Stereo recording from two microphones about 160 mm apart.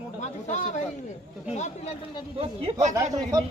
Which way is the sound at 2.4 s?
40° right (ahead or behind).